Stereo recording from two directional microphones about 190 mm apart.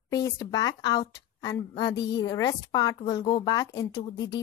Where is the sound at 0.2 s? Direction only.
20° left (ahead or behind).